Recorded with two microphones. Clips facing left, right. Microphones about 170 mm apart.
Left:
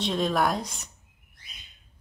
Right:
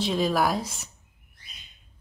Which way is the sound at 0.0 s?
Centre (ahead or behind).